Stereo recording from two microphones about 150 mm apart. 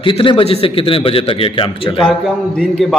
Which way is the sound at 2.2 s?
Centre (ahead or behind).